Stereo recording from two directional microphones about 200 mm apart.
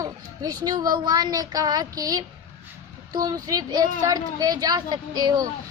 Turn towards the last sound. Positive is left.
turn(degrees=-20)  # may be behind; listen again after turning